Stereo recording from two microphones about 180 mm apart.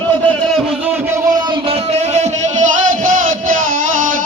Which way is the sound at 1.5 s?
35° right (ahead or behind).